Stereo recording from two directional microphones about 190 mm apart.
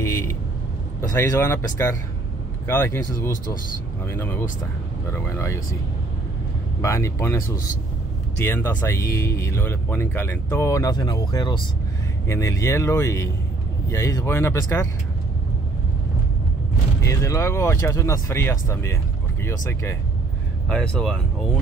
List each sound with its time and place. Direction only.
0.0 s vehicle: 15° left (ahead or behind)
1.1 s speech: 15° left (ahead or behind)
4.0 s speech: 10° left (ahead or behind)
6.8 s speech: 15° left (ahead or behind)
17.0 s speech: 15° left (ahead or behind)
20.6 s speech: 5° left (ahead or behind)